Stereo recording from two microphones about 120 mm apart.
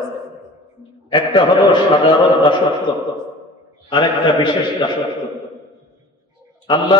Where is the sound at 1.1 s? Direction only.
40° left (ahead or behind).